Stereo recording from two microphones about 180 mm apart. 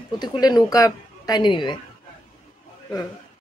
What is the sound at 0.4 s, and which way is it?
A woman's voice, 20° left (ahead or behind).